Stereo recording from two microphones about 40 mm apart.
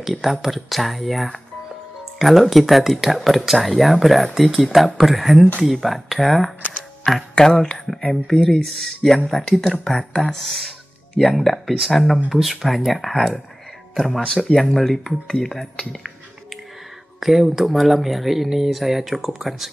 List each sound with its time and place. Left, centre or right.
0.1 s speech: centre
7.4 s speech: left
8.0 s speech: centre
17.2 s speech: centre